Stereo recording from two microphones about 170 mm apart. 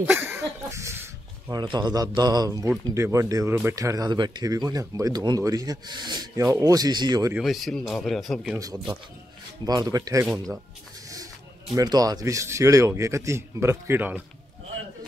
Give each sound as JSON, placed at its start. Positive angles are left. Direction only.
{"t": 0.0, "sound": "a sound", "side_deg": -15}
{"t": 1.5, "sound": "speech", "side_deg": -25}
{"t": 7.3, "sound": "speech", "side_deg": 0}
{"t": 9.7, "sound": "speech", "side_deg": -20}
{"t": 11.7, "sound": "speech", "side_deg": -20}